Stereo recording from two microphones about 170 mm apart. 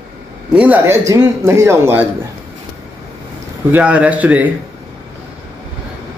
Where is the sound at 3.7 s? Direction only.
10° right (ahead or behind).